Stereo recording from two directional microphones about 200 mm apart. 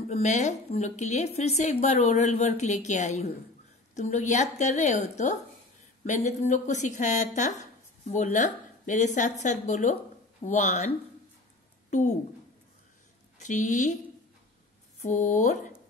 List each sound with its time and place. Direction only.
0.1 s a woman's voice: 35° left (ahead or behind)
13.4 s a woman's voice: 40° left (ahead or behind)
15.0 s a woman's voice: 35° left (ahead or behind)